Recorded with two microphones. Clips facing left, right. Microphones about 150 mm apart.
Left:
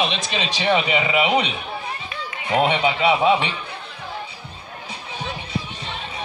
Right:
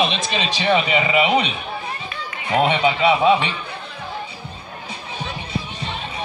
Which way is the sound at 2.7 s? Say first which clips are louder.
Right 2 dB; 5° left (ahead or behind).